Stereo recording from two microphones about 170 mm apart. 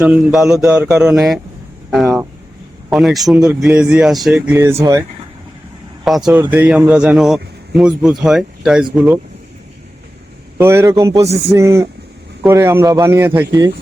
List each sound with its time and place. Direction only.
0.0 s speech: 5° right (ahead or behind)
4.6 s a man's voice: 20° right (ahead or behind)
6.1 s speech: centre (ahead or behind)
10.6 s a man's voice: 15° right (ahead or behind)